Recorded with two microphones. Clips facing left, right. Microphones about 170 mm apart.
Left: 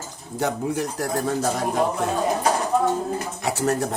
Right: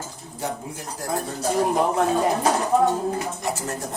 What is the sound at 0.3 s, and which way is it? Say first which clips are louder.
Speech: left 7 dB; 75° left (ahead or behind).